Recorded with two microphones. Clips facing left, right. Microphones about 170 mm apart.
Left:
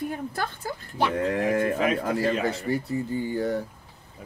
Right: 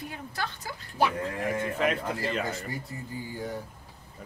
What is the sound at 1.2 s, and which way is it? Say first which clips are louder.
Speech: left 7 dB; 60° left (ahead or behind).